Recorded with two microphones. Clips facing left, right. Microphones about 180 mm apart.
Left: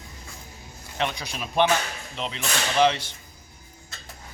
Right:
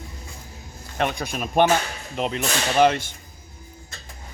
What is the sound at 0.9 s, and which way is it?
Speech, 50° right (ahead or behind).